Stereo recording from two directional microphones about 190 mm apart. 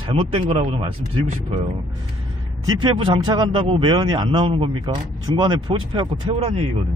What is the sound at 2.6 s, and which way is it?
A man's voice, 25° right (ahead or behind).